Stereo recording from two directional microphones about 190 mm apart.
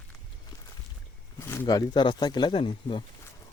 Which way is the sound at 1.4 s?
15° left (ahead or behind).